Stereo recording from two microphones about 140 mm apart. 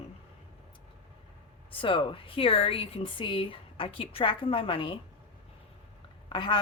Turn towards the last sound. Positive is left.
turn(degrees=35)  # may be behind; listen again after turning